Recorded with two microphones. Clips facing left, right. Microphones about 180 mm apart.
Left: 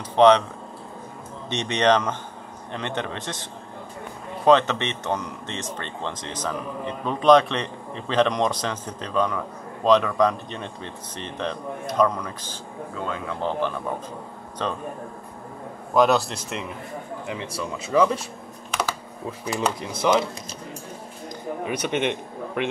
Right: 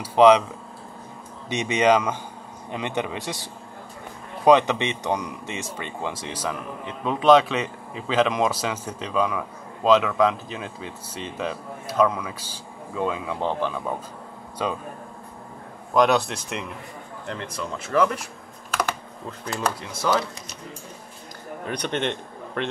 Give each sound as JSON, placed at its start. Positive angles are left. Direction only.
{"t": 0.0, "sound": "speech", "side_deg": -10}
{"t": 1.5, "sound": "speech", "side_deg": -10}
{"t": 4.5, "sound": "speech", "side_deg": -15}
{"t": 15.9, "sound": "speech", "side_deg": 0}
{"t": 18.8, "sound": "typing", "side_deg": 10}
{"t": 19.9, "sound": "speech", "side_deg": 15}
{"t": 21.6, "sound": "a man's voice", "side_deg": 10}